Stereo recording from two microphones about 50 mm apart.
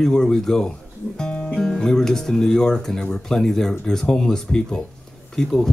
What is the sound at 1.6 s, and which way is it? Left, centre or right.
Speech, centre.